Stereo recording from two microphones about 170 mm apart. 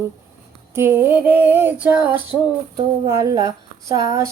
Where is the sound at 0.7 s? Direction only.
15° right (ahead or behind).